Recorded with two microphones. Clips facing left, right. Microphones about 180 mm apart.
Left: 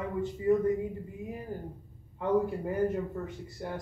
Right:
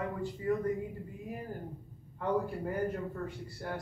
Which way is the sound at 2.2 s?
20° left (ahead or behind).